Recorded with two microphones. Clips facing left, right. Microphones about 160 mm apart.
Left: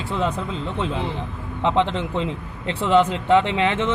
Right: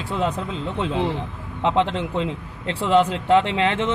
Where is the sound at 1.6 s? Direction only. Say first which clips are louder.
Even; 5° right (ahead or behind).